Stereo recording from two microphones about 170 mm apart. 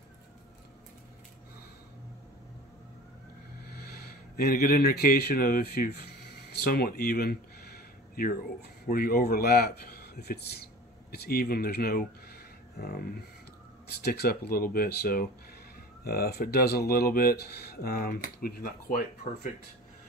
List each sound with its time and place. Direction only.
3.7 s a man's voice: 65° left (ahead or behind)